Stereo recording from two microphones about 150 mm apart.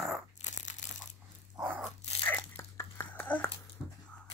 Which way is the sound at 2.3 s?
20° left (ahead or behind).